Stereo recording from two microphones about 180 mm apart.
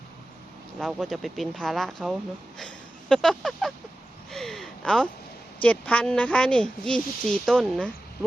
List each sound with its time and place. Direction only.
0.8 s speech: centre (ahead or behind)
4.3 s a sound: centre (ahead or behind)
5.6 s speech: 5° left (ahead or behind)